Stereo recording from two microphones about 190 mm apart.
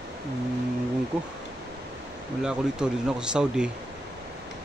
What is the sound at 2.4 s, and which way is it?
Speech, 5° right (ahead or behind).